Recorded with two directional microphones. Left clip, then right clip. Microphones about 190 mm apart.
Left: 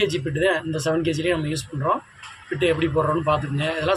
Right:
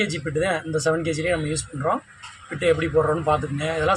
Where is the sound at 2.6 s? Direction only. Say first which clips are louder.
Right 1 dB; 15° right (ahead or behind).